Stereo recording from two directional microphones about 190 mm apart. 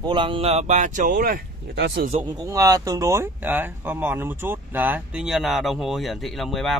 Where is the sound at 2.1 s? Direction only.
25° right (ahead or behind).